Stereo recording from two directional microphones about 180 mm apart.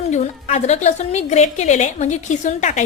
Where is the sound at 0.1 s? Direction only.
40° left (ahead or behind).